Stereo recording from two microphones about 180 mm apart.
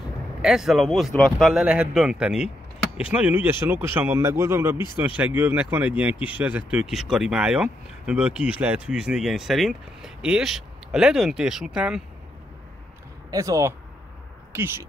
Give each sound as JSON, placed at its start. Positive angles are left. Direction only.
{"t": 0.4, "sound": "speech", "side_deg": 0}
{"t": 13.3, "sound": "speech", "side_deg": -20}